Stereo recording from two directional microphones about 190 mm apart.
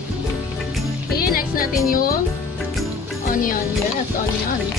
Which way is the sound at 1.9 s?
50° left (ahead or behind).